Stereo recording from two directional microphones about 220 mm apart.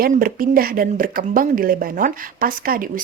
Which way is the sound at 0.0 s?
40° right (ahead or behind).